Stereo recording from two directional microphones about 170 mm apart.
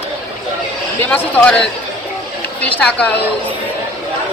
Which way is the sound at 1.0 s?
10° left (ahead or behind).